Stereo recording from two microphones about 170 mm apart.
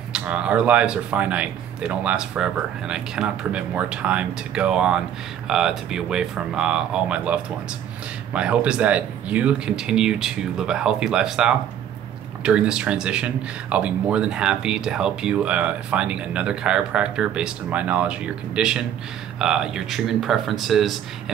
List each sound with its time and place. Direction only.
0.1 s speech: 5° right (ahead or behind)